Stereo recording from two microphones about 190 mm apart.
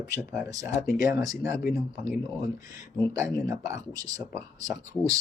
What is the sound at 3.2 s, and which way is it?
Speech, 15° right (ahead or behind).